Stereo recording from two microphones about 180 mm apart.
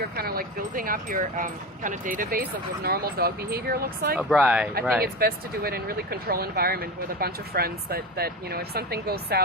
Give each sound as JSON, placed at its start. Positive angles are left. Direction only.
{"t": 0.0, "sound": "speech", "side_deg": -60}
{"t": 4.2, "sound": "speech", "side_deg": -5}
{"t": 5.0, "sound": "speech", "side_deg": -55}